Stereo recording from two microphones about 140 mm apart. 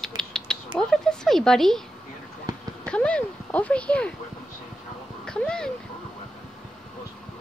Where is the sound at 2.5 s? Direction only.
30° right (ahead or behind).